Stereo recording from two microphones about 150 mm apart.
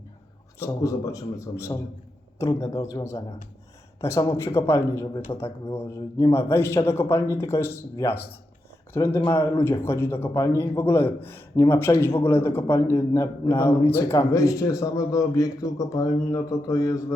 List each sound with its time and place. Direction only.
0.6 s a man's voice: 20° left (ahead or behind)